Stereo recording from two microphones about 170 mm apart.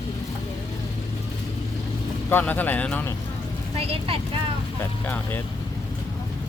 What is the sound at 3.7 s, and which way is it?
Speech, 35° right (ahead or behind).